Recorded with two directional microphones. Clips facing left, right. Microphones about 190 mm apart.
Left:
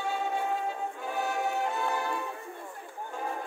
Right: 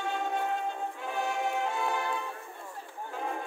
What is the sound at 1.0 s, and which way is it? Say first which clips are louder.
Music: left 1 dB; centre (ahead or behind).